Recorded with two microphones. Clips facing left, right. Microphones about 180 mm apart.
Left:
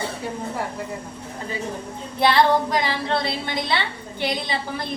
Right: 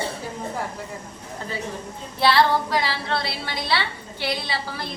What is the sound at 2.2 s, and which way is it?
A woman's voice, 20° left (ahead or behind).